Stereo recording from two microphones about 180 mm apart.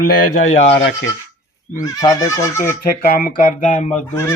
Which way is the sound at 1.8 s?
20° left (ahead or behind).